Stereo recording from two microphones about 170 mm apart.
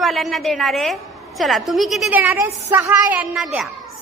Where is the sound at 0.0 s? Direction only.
Centre (ahead or behind).